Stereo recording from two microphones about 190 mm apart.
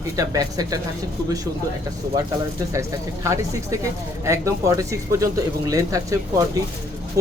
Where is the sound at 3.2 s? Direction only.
15° right (ahead or behind).